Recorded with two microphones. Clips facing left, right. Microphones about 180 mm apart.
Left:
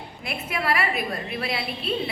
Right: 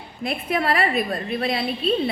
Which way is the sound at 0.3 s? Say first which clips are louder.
Right 4 dB; 25° right (ahead or behind).